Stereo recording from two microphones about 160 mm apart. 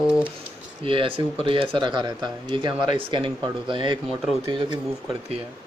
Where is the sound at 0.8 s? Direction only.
35° right (ahead or behind).